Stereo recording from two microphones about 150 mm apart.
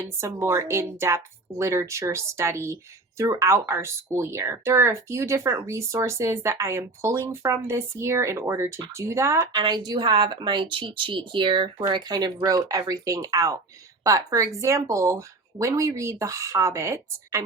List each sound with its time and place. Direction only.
0.2 s speech: 20° right (ahead or behind)